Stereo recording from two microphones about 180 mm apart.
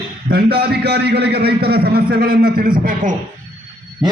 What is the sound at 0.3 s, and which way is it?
A man's voice, 60° right (ahead or behind).